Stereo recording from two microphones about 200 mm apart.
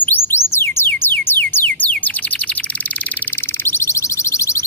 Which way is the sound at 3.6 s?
15° left (ahead or behind).